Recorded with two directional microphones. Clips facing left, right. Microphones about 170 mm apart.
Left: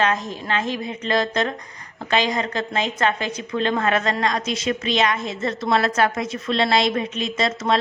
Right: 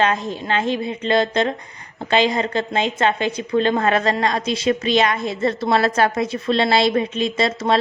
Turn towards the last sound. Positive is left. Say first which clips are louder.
# right 3 dB
turn(degrees=-30)  # may be behind; listen again after turning